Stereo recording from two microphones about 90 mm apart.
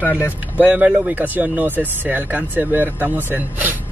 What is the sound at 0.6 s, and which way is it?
Speech, 15° right (ahead or behind).